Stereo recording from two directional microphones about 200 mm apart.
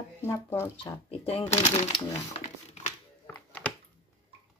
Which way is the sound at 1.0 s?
30° left (ahead or behind).